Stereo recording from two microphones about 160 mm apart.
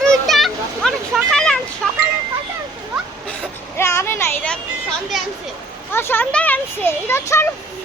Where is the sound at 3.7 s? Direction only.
15° left (ahead or behind).